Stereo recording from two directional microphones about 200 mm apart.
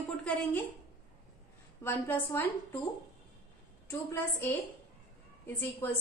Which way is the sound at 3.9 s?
10° left (ahead or behind).